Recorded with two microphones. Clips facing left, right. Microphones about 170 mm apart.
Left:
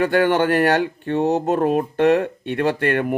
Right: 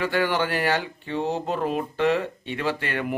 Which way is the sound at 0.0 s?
55° left (ahead or behind).